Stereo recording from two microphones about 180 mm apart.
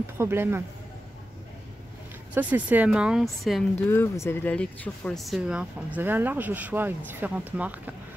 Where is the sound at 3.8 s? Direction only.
10° left (ahead or behind).